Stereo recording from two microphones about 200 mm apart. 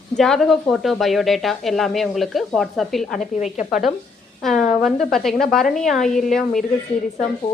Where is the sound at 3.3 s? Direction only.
35° left (ahead or behind).